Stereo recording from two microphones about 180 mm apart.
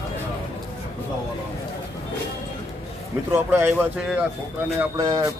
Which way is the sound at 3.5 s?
10° right (ahead or behind).